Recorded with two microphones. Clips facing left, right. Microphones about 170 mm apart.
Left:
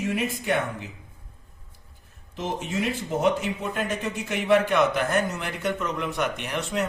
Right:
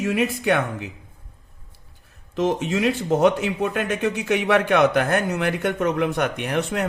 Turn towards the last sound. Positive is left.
turn(degrees=-55)  # may be behind; listen again after turning